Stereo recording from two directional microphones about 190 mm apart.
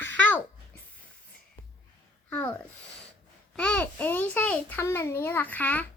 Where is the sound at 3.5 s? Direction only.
5° left (ahead or behind).